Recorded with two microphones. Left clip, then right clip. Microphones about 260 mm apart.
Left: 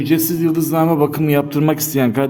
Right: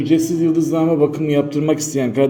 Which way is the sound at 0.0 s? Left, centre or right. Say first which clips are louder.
Right 1 dB; left.